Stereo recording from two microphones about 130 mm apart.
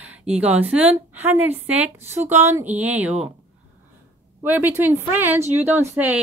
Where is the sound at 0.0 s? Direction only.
10° right (ahead or behind).